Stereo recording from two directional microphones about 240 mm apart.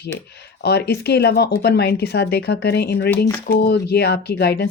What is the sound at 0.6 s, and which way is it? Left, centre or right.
Speech, left.